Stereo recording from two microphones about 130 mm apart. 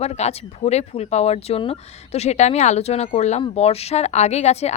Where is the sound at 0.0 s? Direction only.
55° left (ahead or behind).